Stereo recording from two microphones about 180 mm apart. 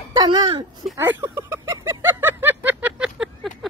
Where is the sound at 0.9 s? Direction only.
15° right (ahead or behind).